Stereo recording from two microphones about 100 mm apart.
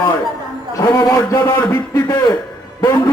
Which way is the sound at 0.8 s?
35° left (ahead or behind).